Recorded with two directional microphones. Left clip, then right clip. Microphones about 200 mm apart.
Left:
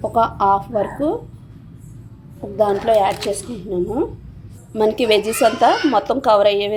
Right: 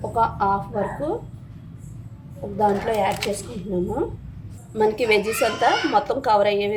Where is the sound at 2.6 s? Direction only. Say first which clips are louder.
Left 5 dB; 35° left (ahead or behind).